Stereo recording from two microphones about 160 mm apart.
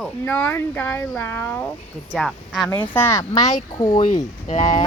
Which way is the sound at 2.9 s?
15° left (ahead or behind).